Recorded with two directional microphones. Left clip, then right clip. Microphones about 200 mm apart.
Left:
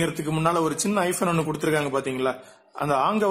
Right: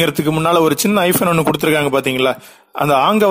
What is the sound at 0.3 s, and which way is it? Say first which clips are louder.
A man's voice: right 9 dB; 35° right (ahead or behind).